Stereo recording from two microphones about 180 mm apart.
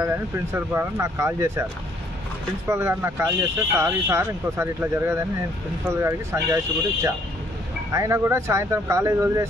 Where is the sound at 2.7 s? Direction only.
15° right (ahead or behind).